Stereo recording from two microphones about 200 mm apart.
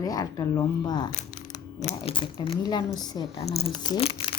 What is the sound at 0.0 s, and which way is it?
A woman's voice, 20° left (ahead or behind).